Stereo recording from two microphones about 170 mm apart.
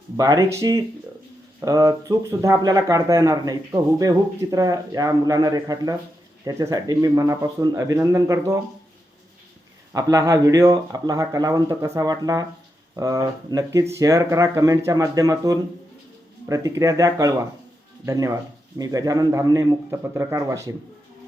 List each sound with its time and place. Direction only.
0.2 s speech: 20° right (ahead or behind)
9.9 s speech: 20° right (ahead or behind)